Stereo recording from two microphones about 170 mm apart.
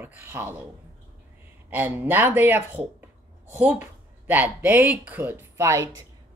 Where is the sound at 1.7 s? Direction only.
10° right (ahead or behind).